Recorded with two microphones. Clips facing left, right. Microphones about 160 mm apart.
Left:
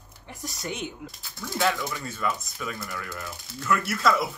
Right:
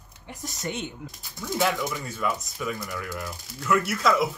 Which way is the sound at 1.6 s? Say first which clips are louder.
Even; 5° right (ahead or behind).